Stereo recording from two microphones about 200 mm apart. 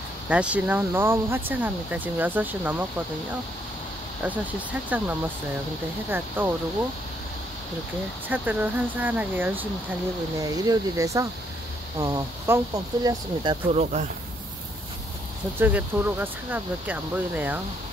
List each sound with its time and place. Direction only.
0.3 s speech: 5° right (ahead or behind)
4.2 s speech: 10° right (ahead or behind)
8.3 s speech: 10° right (ahead or behind)
13.7 s speech: 35° right (ahead or behind)
15.6 s speech: 10° right (ahead or behind)